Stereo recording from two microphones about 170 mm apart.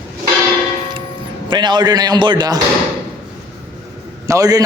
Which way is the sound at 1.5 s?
25° right (ahead or behind).